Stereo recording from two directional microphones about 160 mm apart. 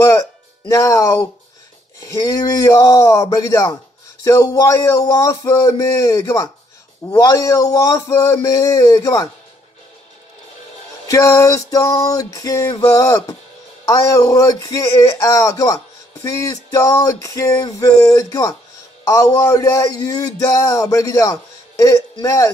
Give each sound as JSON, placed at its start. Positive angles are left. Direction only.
{"t": 0.7, "sound": "male singing", "side_deg": 20}
{"t": 11.1, "sound": "male singing", "side_deg": 20}